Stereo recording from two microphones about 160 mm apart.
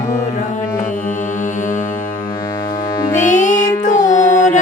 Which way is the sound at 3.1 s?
50° left (ahead or behind).